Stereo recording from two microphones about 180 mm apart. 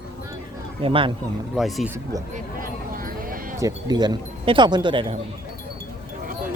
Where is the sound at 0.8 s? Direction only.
30° right (ahead or behind).